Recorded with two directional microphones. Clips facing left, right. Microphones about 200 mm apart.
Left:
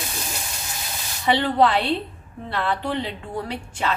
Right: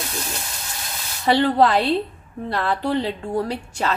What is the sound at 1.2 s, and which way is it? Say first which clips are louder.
A woman's voice: right 2 dB; 40° right (ahead or behind).